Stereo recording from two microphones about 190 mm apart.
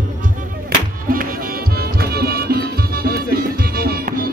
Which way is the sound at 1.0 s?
50° right (ahead or behind).